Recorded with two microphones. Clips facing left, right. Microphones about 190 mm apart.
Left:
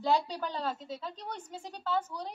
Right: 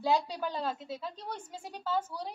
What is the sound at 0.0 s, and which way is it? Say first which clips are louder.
A woman's voice: even; 10° right (ahead or behind).